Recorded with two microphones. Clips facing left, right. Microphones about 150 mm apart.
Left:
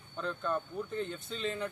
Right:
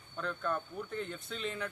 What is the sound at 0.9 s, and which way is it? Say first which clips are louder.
Speech: left 2 dB; 35° left (ahead or behind).